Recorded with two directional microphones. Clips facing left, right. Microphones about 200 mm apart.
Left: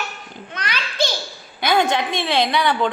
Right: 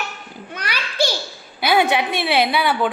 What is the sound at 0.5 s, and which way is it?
Children playing, 10° right (ahead or behind).